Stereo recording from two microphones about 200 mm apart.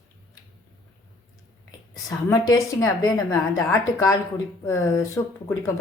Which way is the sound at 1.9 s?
15° left (ahead or behind).